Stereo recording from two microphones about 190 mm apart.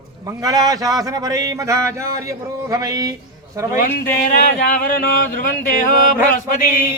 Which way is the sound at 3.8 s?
50° left (ahead or behind).